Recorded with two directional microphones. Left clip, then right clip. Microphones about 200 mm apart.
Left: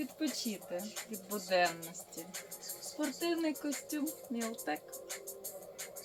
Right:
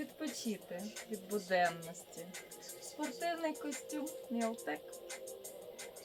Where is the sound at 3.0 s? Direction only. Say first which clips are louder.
Left 3 dB; 20° right (ahead or behind).